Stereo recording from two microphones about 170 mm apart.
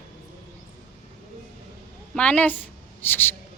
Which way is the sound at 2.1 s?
5° left (ahead or behind).